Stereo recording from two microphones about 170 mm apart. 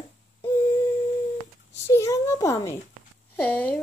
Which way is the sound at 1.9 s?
15° left (ahead or behind).